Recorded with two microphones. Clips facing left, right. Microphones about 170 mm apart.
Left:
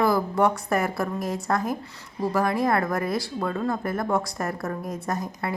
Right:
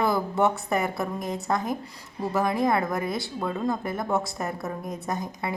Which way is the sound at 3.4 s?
15° right (ahead or behind).